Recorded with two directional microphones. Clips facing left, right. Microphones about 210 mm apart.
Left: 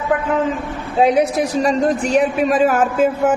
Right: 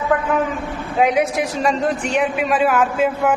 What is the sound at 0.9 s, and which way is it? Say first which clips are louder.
A woman's voice: left 3 dB; 35° left (ahead or behind).